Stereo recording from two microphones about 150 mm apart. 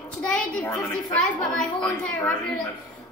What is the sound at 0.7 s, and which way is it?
Speech, 25° left (ahead or behind).